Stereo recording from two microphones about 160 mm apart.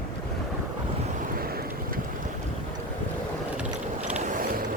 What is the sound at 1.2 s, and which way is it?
Boat, 65° right (ahead or behind).